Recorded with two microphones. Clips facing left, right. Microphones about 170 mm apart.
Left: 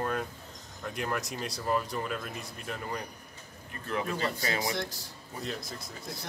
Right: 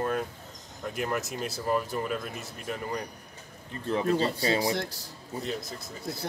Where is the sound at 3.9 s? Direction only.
30° right (ahead or behind).